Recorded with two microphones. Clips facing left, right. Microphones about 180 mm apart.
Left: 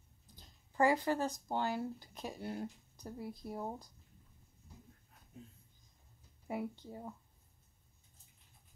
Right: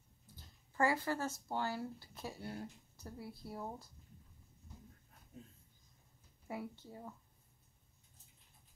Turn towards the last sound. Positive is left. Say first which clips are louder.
# left 5 dB
turn(degrees=15)  # may be behind; listen again after turning